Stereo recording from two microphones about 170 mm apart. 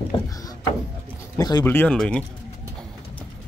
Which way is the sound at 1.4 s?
20° left (ahead or behind).